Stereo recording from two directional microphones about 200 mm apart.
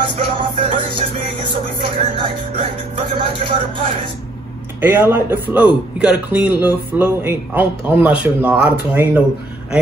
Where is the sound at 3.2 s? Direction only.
25° right (ahead or behind).